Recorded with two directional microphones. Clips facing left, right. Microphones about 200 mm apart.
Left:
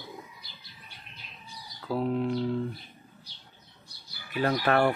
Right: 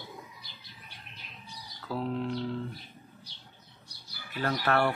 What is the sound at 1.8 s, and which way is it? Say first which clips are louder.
Speech: left 4 dB; 15° left (ahead or behind).